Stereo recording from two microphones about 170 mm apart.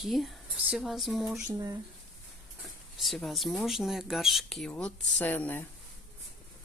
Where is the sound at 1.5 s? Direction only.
20° right (ahead or behind).